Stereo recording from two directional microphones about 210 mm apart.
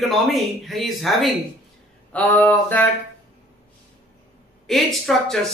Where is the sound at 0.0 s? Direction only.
Centre (ahead or behind).